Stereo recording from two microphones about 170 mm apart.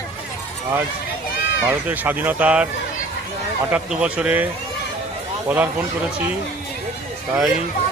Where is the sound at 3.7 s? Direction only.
5° right (ahead or behind).